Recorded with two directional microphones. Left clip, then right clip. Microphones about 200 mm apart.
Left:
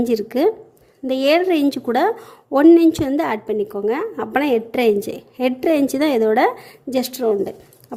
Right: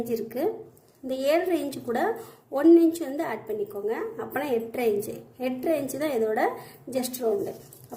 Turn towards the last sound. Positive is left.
turn(degrees=45)  # may be behind; listen again after turning